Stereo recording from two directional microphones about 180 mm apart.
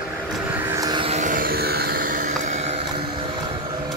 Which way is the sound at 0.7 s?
20° right (ahead or behind).